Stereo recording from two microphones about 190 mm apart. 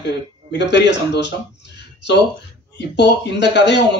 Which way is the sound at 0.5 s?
65° left (ahead or behind).